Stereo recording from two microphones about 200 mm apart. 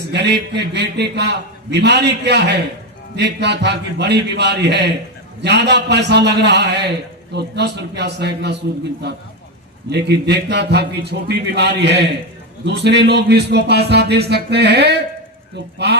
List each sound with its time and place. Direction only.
0.1 s a man's voice: 55° right (ahead or behind)